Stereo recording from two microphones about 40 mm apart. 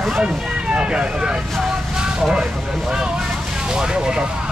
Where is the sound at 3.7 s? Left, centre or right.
Centre.